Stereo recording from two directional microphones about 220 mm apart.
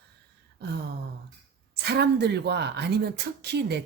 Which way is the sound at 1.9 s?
50° right (ahead or behind).